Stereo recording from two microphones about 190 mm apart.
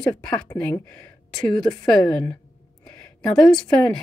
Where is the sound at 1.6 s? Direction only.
20° left (ahead or behind).